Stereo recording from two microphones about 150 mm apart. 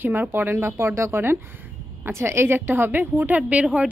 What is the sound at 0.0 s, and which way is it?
A woman's voice, 15° right (ahead or behind).